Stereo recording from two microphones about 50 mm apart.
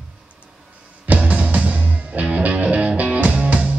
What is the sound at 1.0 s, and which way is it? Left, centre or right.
Music, right.